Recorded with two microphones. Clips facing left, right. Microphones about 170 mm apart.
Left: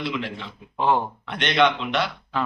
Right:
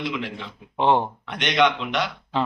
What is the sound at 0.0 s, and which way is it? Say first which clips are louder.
A man's voice: even; 15° right (ahead or behind).